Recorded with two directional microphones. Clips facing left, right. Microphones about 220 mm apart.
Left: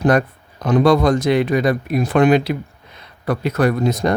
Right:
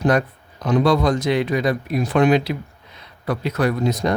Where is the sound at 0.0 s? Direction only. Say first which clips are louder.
Left 3 dB; 55° left (ahead or behind).